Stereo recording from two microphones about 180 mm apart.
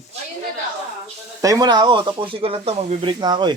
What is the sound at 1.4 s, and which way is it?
Speech, 20° right (ahead or behind).